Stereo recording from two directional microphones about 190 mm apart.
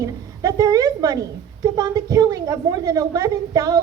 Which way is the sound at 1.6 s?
20° right (ahead or behind).